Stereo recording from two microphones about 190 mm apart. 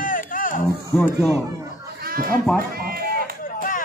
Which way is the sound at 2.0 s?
50° right (ahead or behind).